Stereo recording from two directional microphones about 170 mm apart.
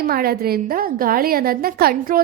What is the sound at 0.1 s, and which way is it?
A woman's voice, 60° right (ahead or behind).